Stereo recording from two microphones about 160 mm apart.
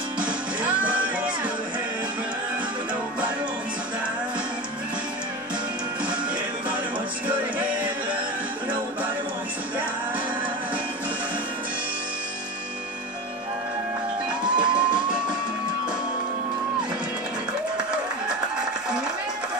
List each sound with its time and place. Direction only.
7.2 s music: 10° right (ahead or behind)
14.4 s music: 30° right (ahead or behind)